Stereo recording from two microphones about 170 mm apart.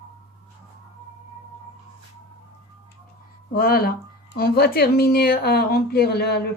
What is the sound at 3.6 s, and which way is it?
A woman's voice, 60° left (ahead or behind).